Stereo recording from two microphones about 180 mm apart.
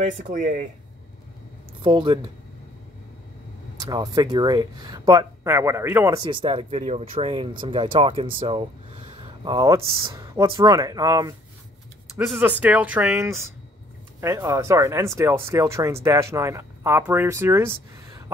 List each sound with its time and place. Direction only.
0.0 s speech: 45° right (ahead or behind)
1.8 s speech: 25° right (ahead or behind)
3.8 s speech: 20° right (ahead or behind)
12.3 s speech: 10° right (ahead or behind)